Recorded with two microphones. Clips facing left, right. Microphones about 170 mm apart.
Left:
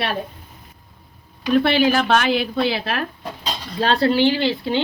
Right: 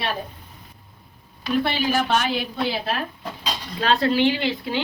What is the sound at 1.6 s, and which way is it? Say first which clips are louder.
A woman's voice: left 5 dB; 75° left (ahead or behind).